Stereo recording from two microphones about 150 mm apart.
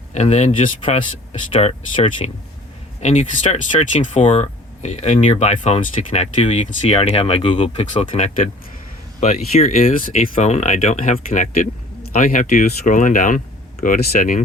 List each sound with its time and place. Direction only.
0.1 s speech: 50° left (ahead or behind)
3.0 s speech: 50° left (ahead or behind)
8.0 s speech: 55° left (ahead or behind)
9.8 s speech: 60° left (ahead or behind)